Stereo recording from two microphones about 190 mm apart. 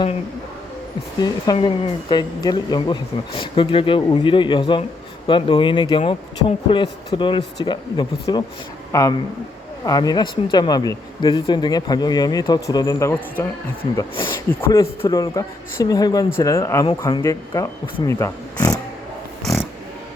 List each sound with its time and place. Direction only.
1.5 s speech: 30° left (ahead or behind); by 13.5 s 10° left (ahead or behind)
13.9 s speech: 20° left (ahead or behind)